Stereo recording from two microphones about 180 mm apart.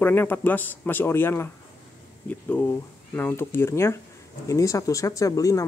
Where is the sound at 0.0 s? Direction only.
10° left (ahead or behind).